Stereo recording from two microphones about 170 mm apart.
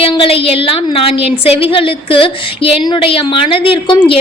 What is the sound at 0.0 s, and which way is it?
A woman's voice, 30° left (ahead or behind).